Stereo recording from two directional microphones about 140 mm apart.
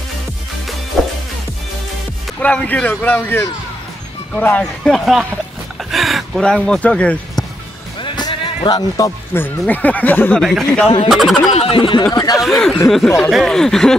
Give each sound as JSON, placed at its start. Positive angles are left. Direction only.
{"t": 1.0, "sound": "music", "side_deg": 0}
{"t": 2.4, "sound": "speech", "side_deg": 10}
{"t": 8.0, "sound": "speech", "side_deg": 30}
{"t": 10.4, "sound": "a sound", "side_deg": 0}
{"t": 11.5, "sound": "speech", "side_deg": 40}
{"t": 12.0, "sound": "speech", "side_deg": 25}
{"t": 12.4, "sound": "a sound", "side_deg": 0}